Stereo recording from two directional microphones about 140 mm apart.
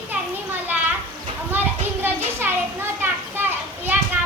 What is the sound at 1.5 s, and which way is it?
Children playing, 15° right (ahead or behind).